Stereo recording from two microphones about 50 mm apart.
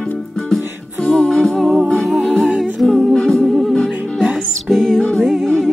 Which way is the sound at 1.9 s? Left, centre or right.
Centre.